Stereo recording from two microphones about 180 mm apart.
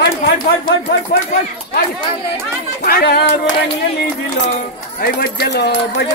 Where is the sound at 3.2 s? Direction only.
45° left (ahead or behind).